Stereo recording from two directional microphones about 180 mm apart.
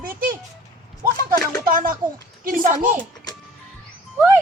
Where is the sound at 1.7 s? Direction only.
50° right (ahead or behind).